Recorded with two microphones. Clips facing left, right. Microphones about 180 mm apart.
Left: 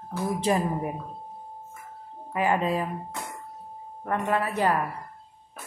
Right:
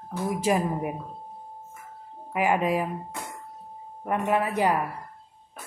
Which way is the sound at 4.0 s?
15° right (ahead or behind).